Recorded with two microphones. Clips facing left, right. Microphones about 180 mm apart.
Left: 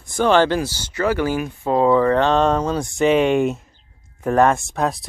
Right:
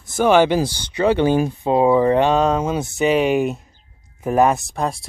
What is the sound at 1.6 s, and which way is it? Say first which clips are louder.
Speech: even; 15° right (ahead or behind).